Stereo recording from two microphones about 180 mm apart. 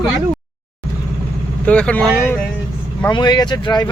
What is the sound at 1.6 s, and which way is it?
Speech, 5° left (ahead or behind).